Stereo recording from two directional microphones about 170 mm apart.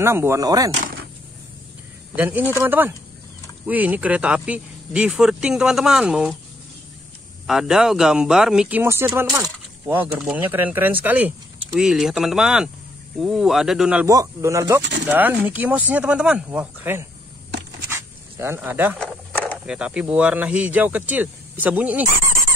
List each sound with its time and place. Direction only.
0.0 s speech: 15° right (ahead or behind)
2.1 s speech: 10° right (ahead or behind)
7.4 s speech: 5° right (ahead or behind)
14.0 s a man's voice: 20° right (ahead or behind)
17.8 s a sound: 15° right (ahead or behind)
18.9 s a sound: 5° left (ahead or behind)
19.6 s speech: 5° right (ahead or behind)